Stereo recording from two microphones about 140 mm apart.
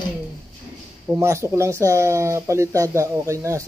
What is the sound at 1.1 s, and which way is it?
Speech, 20° right (ahead or behind).